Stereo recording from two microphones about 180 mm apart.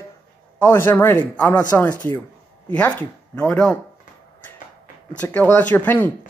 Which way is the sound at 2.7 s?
5° left (ahead or behind).